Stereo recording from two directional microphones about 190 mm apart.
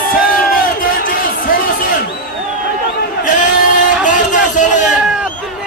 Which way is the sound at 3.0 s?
45° left (ahead or behind).